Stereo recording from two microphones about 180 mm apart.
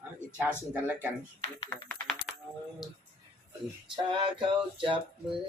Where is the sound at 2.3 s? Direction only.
5° right (ahead or behind).